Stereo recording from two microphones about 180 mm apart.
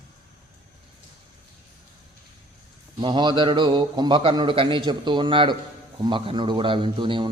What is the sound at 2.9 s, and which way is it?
Mantra, 25° right (ahead or behind).